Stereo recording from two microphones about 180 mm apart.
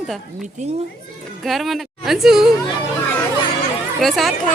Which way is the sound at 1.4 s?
Centre (ahead or behind).